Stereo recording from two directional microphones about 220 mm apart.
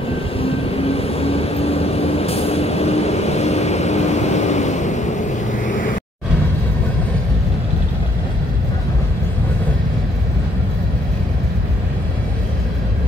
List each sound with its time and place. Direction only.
0.4 s vehicle: 25° left (ahead or behind)